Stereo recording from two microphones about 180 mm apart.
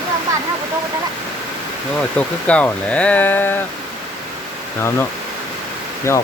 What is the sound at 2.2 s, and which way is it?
Speech, 10° left (ahead or behind).